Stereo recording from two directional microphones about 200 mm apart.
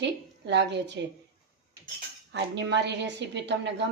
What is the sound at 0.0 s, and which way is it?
A woman's voice, 60° right (ahead or behind).